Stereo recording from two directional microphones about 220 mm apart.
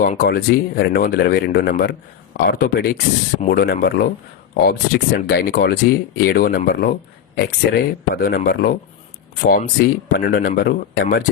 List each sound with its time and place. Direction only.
0.0 s speech: 40° left (ahead or behind)